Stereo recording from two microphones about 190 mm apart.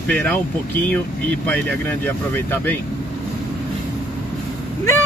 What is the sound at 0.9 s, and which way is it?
Speech, 10° left (ahead or behind).